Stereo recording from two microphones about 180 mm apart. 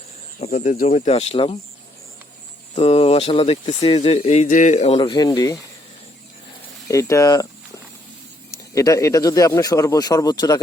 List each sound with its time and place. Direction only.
0.4 s speech: 45° left (ahead or behind)
2.7 s speech: 35° left (ahead or behind)
6.8 s speech: 15° left (ahead or behind)
8.4 s speech: 15° left (ahead or behind)